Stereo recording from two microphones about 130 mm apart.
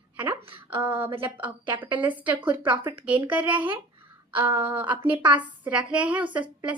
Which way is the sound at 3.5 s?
40° right (ahead or behind).